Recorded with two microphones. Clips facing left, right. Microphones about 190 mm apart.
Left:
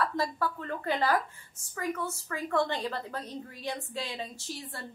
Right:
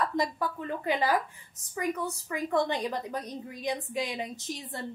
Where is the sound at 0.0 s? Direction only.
15° right (ahead or behind).